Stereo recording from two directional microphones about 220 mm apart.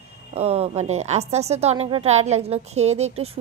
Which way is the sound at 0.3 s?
30° right (ahead or behind).